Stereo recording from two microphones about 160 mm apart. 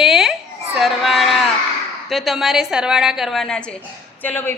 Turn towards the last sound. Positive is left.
turn(degrees=10)  # may be behind; listen again after turning